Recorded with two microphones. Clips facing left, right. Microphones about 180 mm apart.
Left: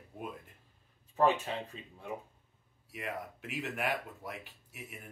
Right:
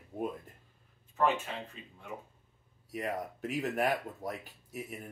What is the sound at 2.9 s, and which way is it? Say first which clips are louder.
Speech: right 5 dB; 40° right (ahead or behind).